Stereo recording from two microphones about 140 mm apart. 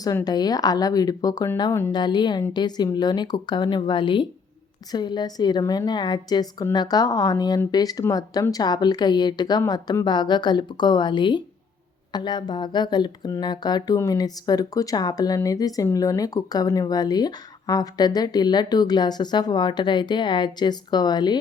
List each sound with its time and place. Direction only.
0.0 s speech: 25° left (ahead or behind)